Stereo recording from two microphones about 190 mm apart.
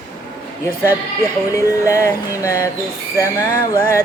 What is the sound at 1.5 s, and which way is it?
A man's voice, 15° left (ahead or behind).